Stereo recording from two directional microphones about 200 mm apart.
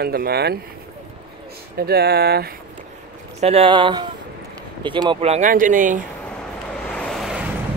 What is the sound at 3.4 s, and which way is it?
Speech, 30° right (ahead or behind).